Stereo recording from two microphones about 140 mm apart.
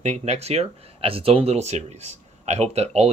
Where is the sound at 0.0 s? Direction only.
50° right (ahead or behind).